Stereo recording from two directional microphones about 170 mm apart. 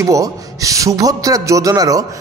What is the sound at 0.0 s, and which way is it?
A man's voice, 20° right (ahead or behind).